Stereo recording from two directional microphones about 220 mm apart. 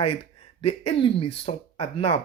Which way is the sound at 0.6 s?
25° left (ahead or behind).